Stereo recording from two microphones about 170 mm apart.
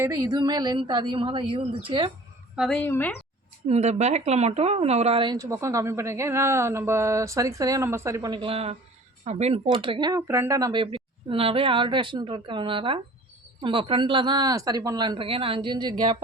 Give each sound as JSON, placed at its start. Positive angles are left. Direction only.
{"t": 0.0, "sound": "speech", "side_deg": -20}
{"t": 2.6, "sound": "a woman's voice", "side_deg": 5}
{"t": 3.7, "sound": "speech", "side_deg": -40}